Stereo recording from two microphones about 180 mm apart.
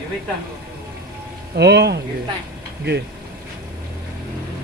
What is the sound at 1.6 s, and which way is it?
Speech, 70° right (ahead or behind).